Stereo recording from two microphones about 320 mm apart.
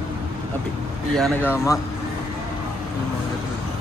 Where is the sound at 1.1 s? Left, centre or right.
Centre.